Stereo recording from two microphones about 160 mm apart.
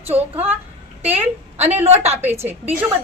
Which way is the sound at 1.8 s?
40° right (ahead or behind).